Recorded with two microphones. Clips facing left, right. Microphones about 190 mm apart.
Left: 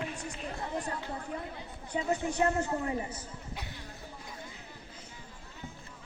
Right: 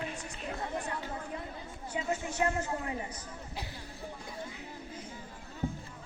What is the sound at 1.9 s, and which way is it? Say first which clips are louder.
Speech: left 3 dB; 35° left (ahead or behind).